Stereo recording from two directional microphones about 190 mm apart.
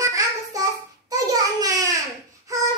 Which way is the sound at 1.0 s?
20° right (ahead or behind).